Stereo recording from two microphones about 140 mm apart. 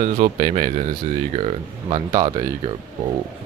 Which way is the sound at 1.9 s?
30° right (ahead or behind).